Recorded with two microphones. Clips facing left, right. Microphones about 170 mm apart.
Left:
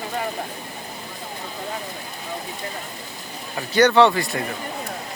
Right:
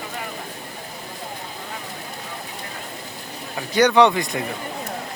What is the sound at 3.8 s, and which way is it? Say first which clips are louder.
Speech: even; 15° right (ahead or behind).